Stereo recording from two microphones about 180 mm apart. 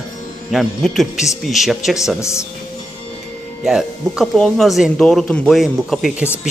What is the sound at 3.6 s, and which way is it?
Speech, 5° right (ahead or behind).